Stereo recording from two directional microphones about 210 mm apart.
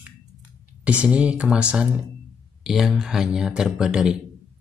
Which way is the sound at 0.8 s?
5° right (ahead or behind).